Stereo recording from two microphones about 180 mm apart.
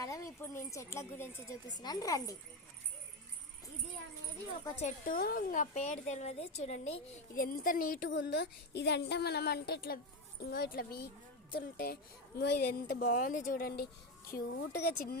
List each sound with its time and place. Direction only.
0.0 s speech: 15° left (ahead or behind)
4.8 s a woman's voice: 45° left (ahead or behind)
7.4 s speech: 50° left (ahead or behind)
8.1 s a woman's voice: 65° left (ahead or behind)
12.4 s a woman's voice: 60° left (ahead or behind)